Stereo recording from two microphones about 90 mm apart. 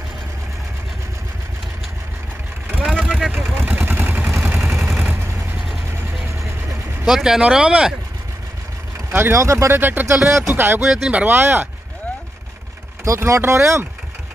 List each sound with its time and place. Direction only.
2.8 s vehicle: 5° right (ahead or behind)
3.4 s vehicle: 20° right (ahead or behind)
4.6 s vehicle: 5° right (ahead or behind)
4.9 s vehicle: 20° right (ahead or behind)
7.1 s speech: 5° right (ahead or behind)
9.1 s speech: 30° right (ahead or behind)
9.8 s speech: 25° right (ahead or behind)
10.8 s speech: 10° right (ahead or behind)
13.0 s speech: 35° right (ahead or behind)